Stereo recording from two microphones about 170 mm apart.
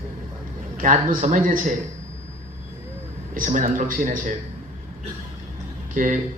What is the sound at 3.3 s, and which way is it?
A man's voice, 50° right (ahead or behind).